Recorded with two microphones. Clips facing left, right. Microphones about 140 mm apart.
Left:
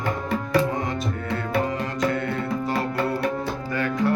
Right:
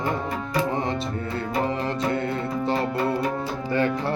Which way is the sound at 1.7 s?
30° right (ahead or behind).